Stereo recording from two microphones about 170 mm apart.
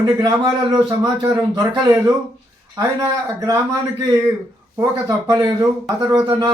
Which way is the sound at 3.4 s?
20° right (ahead or behind).